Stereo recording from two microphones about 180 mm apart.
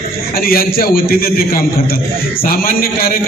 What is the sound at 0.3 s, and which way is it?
A man's voice, 55° left (ahead or behind).